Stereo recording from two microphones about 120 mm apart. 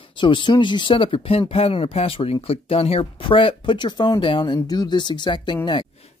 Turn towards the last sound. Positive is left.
turn(degrees=40)  # may be behind; listen again after turning